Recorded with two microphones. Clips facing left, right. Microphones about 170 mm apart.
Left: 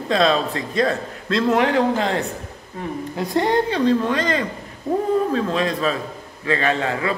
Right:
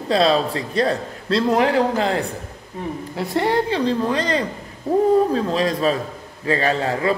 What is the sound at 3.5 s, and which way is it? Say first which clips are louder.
A man's voice: left 2 dB; 30° right (ahead or behind).